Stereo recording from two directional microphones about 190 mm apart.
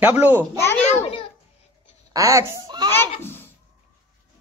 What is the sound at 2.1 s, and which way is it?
Speech, 20° right (ahead or behind).